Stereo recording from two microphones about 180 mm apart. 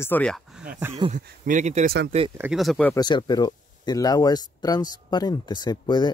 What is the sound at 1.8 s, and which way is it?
Speech, 60° right (ahead or behind).